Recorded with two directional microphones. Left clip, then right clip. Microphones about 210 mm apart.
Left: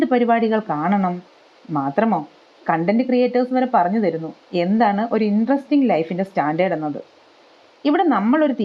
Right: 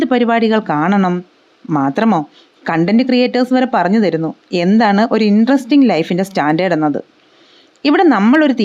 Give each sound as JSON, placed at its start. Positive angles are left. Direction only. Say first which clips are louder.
{"t": 0.0, "sound": "speech", "louder": "right 4 dB", "side_deg": -25}